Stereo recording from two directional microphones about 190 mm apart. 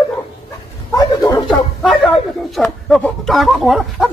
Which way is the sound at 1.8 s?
Centre (ahead or behind).